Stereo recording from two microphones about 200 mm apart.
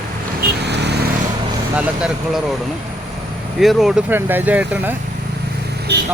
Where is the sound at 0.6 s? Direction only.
55° right (ahead or behind).